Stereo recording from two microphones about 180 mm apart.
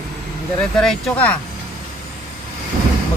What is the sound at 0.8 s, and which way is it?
Speech, 5° left (ahead or behind).